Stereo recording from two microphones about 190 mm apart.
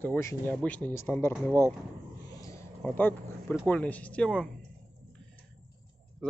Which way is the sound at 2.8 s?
5° left (ahead or behind).